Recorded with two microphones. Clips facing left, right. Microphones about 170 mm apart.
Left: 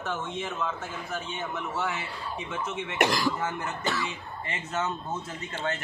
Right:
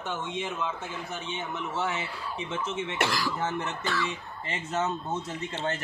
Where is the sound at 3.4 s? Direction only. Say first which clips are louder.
Even; 25° right (ahead or behind).